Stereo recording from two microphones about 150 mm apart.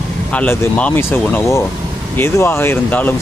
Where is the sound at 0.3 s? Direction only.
10° left (ahead or behind).